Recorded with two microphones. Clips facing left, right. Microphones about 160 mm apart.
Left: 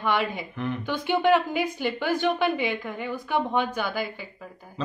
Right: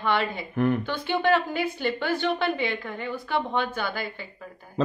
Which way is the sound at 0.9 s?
15° left (ahead or behind).